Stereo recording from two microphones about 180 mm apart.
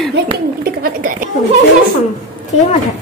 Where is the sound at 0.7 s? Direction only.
50° right (ahead or behind).